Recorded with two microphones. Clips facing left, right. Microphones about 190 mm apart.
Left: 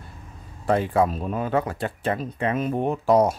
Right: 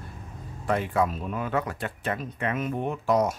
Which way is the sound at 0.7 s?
30° left (ahead or behind).